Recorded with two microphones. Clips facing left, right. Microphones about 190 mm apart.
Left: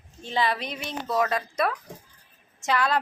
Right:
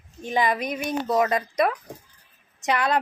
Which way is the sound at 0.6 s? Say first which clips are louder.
Right 6 dB; 50° right (ahead or behind).